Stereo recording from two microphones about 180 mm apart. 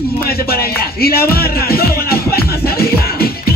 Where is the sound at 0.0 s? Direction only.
60° left (ahead or behind).